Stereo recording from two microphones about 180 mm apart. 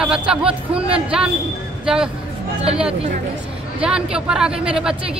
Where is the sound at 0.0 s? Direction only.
5° right (ahead or behind).